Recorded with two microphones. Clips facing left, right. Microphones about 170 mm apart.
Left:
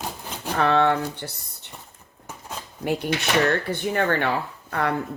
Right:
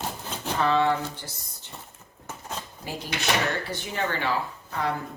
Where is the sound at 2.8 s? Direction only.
60° left (ahead or behind).